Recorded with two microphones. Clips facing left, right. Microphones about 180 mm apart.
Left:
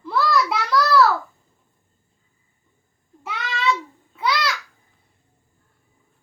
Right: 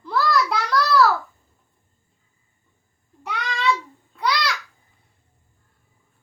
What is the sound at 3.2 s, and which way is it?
Child singing, 5° left (ahead or behind).